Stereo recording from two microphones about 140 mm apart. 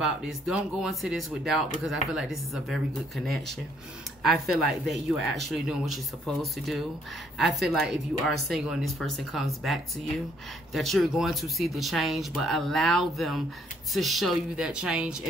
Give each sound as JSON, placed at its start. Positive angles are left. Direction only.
{"t": 0.0, "sound": "speech", "side_deg": -5}
{"t": 4.2, "sound": "speech", "side_deg": 0}
{"t": 10.7, "sound": "speech", "side_deg": 0}